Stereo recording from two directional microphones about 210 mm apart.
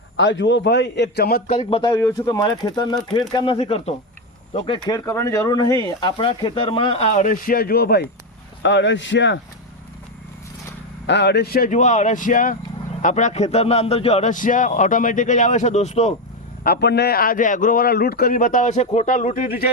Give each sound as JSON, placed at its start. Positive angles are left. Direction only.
{"t": 0.2, "sound": "a man's voice", "side_deg": 60}
{"t": 1.5, "sound": "speech", "side_deg": 25}
{"t": 8.6, "sound": "a man's voice", "side_deg": 60}
{"t": 11.0, "sound": "a man's voice", "side_deg": 55}
{"t": 16.6, "sound": "a man's voice", "side_deg": 50}